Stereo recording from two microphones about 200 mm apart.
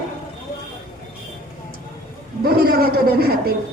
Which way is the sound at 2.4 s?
50° right (ahead or behind).